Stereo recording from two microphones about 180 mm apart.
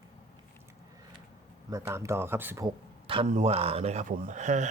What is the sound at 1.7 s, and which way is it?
Speech, 15° right (ahead or behind).